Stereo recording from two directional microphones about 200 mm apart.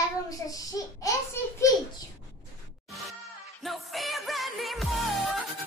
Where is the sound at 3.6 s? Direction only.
Centre (ahead or behind).